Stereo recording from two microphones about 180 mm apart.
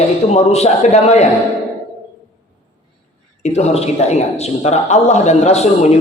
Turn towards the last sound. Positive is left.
turn(degrees=35)  # may be behind; listen again after turning